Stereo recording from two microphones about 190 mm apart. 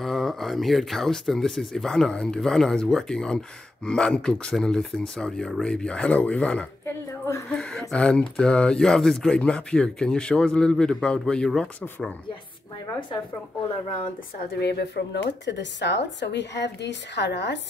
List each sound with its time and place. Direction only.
0.0 s speech: centre (ahead or behind)
7.5 s a sound: 5° left (ahead or behind)
7.9 s speech: 5° left (ahead or behind)
14.6 s speech: 60° left (ahead or behind)